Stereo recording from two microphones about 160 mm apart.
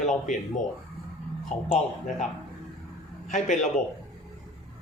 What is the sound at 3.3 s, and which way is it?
Speech, 50° left (ahead or behind).